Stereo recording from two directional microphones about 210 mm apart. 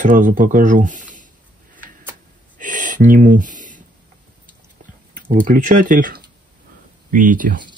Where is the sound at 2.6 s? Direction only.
40° right (ahead or behind).